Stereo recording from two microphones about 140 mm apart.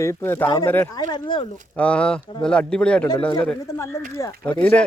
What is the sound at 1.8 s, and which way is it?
Speech, 10° left (ahead or behind).